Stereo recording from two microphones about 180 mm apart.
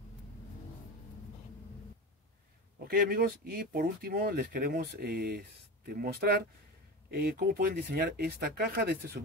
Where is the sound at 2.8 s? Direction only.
55° right (ahead or behind).